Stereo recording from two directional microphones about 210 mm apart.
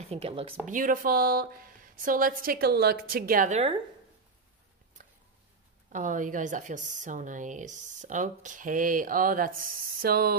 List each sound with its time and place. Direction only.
0.1 s speech: 30° right (ahead or behind)
0.7 s a woman's voice: 40° right (ahead or behind)
5.0 s a sound: 40° right (ahead or behind)
5.9 s speech: 35° right (ahead or behind)